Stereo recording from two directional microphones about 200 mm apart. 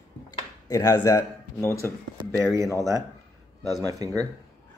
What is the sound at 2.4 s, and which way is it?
Speech, 15° right (ahead or behind).